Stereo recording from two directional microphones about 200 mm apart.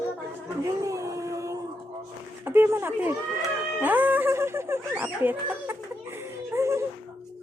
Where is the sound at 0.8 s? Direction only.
15° right (ahead or behind).